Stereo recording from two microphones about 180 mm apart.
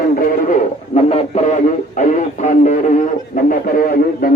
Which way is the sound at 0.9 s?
35° left (ahead or behind).